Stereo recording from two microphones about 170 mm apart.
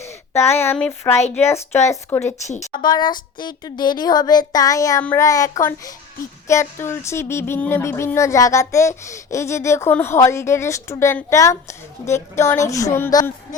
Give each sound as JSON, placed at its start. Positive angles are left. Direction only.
{"t": 0.0, "sound": "a woman's voice", "side_deg": 15}